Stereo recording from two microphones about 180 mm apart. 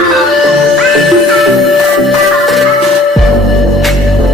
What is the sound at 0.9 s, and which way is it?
Music, centre (ahead or behind).